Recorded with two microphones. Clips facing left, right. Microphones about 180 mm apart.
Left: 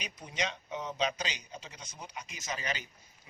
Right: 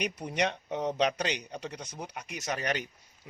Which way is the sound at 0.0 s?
65° right (ahead or behind).